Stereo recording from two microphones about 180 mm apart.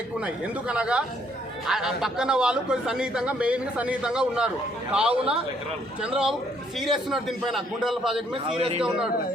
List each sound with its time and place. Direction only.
0.3 s a man's voice: 5° right (ahead or behind)
8.3 s a man's voice: 30° right (ahead or behind)